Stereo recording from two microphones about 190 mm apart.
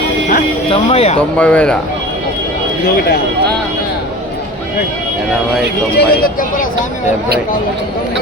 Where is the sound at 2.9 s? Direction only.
55° left (ahead or behind).